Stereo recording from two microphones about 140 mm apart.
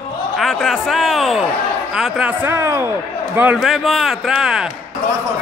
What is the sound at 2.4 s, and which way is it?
A man's voice, 15° right (ahead or behind).